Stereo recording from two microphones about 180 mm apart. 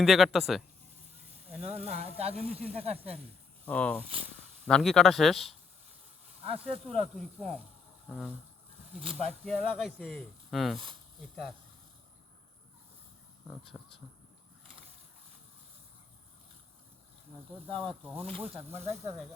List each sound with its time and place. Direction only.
0.0 s speech: centre (ahead or behind)
1.6 s speech: 35° right (ahead or behind)
3.7 s speech: 10° left (ahead or behind)
6.4 s speech: 35° right (ahead or behind)
7.1 s speech: centre (ahead or behind)
8.0 s a sound: 5° left (ahead or behind)
9.0 s speech: 35° right (ahead or behind)
9.4 s speech: centre (ahead or behind)
13.5 s speech: centre (ahead or behind)
17.7 s speech: 30° right (ahead or behind)